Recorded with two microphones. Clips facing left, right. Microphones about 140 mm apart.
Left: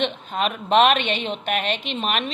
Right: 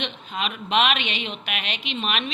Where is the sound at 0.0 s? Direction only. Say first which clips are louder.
Left 6 dB; 45° left (ahead or behind).